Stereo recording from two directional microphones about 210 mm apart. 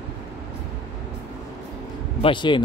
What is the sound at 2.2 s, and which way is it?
Speech, 25° left (ahead or behind).